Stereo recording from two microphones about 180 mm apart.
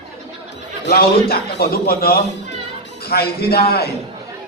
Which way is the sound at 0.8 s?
60° left (ahead or behind).